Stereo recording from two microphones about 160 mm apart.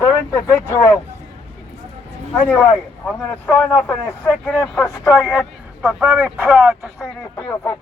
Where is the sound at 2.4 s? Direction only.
10° left (ahead or behind).